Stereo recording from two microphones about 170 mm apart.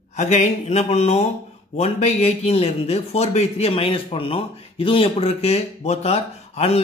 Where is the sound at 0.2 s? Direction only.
45° left (ahead or behind).